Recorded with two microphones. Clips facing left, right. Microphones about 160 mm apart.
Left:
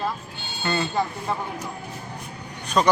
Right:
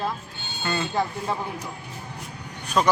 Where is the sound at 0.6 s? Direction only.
Centre (ahead or behind).